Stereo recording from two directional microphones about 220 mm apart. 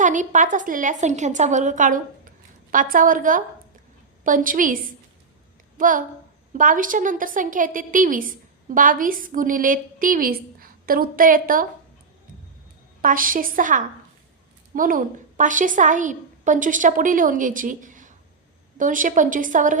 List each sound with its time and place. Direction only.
0.0 s a woman's voice: 35° right (ahead or behind)
13.0 s a woman's voice: 40° right (ahead or behind)